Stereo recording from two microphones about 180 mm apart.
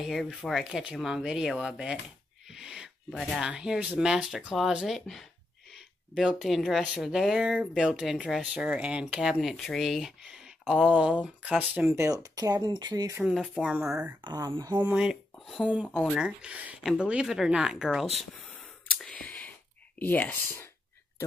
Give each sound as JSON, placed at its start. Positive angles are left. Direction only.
{"t": 0.0, "sound": "speech", "side_deg": 0}
{"t": 13.2, "sound": "speech", "side_deg": -5}
{"t": 14.2, "sound": "speech", "side_deg": -25}
{"t": 14.8, "sound": "speech", "side_deg": -5}